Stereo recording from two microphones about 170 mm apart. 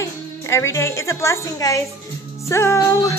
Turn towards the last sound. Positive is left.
turn(degrees=20)  # may be behind; listen again after turning